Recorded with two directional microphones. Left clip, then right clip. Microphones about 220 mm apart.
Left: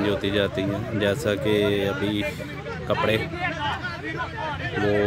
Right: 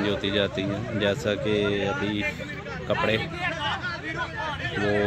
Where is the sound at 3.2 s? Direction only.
45° right (ahead or behind).